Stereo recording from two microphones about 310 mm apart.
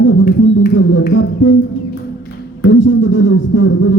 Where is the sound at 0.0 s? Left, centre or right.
Left.